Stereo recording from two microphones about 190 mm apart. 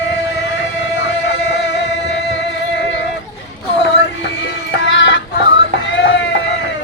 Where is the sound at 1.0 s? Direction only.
65° left (ahead or behind).